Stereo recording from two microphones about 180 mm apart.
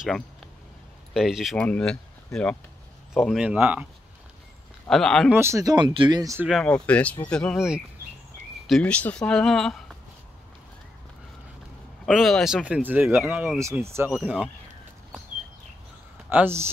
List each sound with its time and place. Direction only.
0.0 s a sound: centre (ahead or behind)
1.1 s speech: centre (ahead or behind)
4.8 s speech: centre (ahead or behind)
5.3 s speech: 15° right (ahead or behind)
6.4 s speech: 5° left (ahead or behind)
12.1 s speech: centre (ahead or behind)
16.3 s speech: 10° right (ahead or behind)